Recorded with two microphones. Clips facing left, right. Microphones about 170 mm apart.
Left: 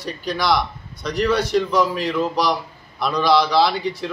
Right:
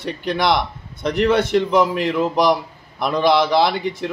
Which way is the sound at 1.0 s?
55° right (ahead or behind).